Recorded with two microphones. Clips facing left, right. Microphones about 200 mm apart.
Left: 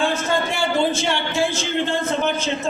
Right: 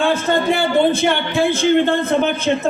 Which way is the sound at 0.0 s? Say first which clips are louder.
Right 4 dB; 55° right (ahead or behind).